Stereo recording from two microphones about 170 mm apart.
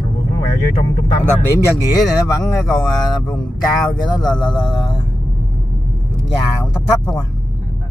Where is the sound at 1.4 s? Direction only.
20° left (ahead or behind).